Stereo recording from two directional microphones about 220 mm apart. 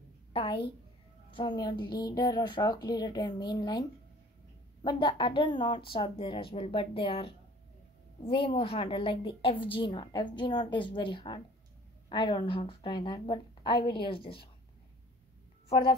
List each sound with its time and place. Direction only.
0.3 s a woman's voice: 25° left (ahead or behind)
4.8 s a woman's voice: 20° left (ahead or behind)
15.7 s a woman's voice: 25° left (ahead or behind)